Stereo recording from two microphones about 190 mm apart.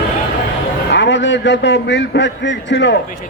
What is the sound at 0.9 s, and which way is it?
A man's voice, 70° left (ahead or behind).